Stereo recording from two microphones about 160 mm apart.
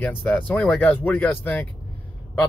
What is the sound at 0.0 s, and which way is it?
Speech, 10° left (ahead or behind).